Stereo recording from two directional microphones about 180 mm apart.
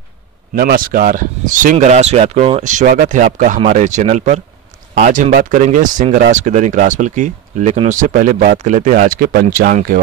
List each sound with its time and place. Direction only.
0.6 s speech: 55° right (ahead or behind)